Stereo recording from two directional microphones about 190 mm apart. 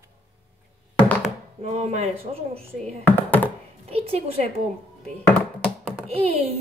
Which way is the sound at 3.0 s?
10° left (ahead or behind).